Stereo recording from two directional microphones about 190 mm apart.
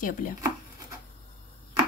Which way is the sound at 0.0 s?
45° left (ahead or behind).